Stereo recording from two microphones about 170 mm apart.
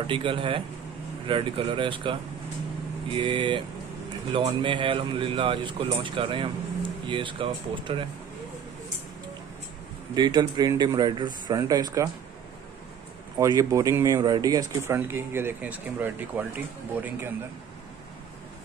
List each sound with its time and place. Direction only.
0.0 s a man's voice: 30° right (ahead or behind)
3.2 s speech: 30° right (ahead or behind)
10.1 s speech: 25° right (ahead or behind)
13.4 s speech: 20° right (ahead or behind)